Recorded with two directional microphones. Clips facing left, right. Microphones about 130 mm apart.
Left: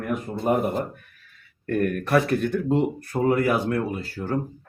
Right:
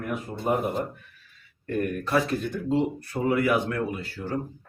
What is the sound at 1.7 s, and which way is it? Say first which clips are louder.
Speech: left 4 dB; 55° left (ahead or behind).